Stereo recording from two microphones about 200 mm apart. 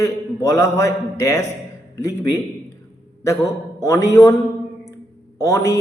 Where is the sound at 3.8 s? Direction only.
15° left (ahead or behind).